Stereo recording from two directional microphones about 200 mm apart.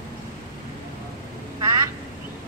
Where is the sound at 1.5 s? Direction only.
15° right (ahead or behind).